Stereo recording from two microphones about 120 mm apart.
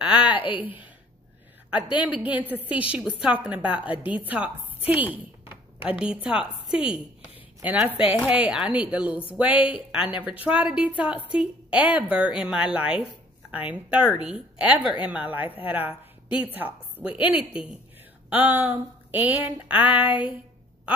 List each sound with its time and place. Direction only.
0.0 s a sound: 10° right (ahead or behind)
0.5 s a woman's voice: 15° right (ahead or behind)
1.9 s a woman's voice: 40° left (ahead or behind)
2.7 s a woman's voice: 10° right (ahead or behind)
19.8 s speech: 45° left (ahead or behind)